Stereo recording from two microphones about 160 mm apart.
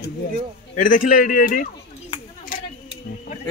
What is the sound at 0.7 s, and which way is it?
Speech, 55° left (ahead or behind).